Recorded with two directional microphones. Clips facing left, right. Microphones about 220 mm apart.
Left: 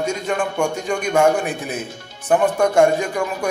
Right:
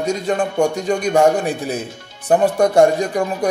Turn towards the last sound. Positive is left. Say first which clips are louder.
# right 3 dB
turn(degrees=-35)  # may be behind; listen again after turning